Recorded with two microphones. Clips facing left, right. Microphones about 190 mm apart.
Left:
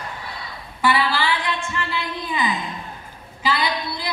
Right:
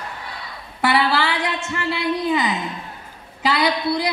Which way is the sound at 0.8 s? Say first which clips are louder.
Right 2 dB; 70° right (ahead or behind).